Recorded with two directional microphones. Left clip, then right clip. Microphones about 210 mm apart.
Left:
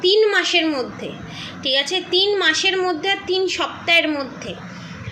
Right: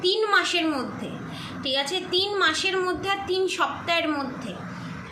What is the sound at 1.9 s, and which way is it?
A woman's voice, centre (ahead or behind).